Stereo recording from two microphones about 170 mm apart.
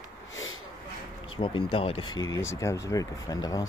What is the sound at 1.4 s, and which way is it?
Speech, 30° left (ahead or behind).